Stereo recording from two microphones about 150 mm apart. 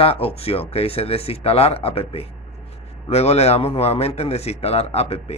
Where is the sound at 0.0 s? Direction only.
40° left (ahead or behind).